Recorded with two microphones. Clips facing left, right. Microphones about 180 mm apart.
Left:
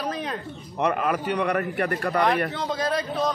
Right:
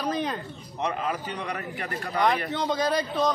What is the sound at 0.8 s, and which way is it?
A man's voice, 60° left (ahead or behind).